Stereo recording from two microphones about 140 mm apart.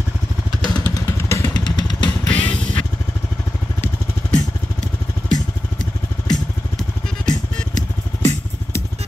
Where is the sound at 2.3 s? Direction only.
10° left (ahead or behind).